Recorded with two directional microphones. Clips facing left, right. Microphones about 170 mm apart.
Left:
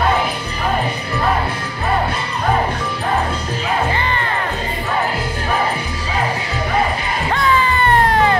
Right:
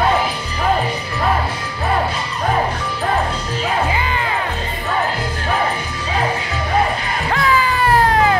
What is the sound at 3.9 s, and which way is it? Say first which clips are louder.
Music: even; 5° right (ahead or behind).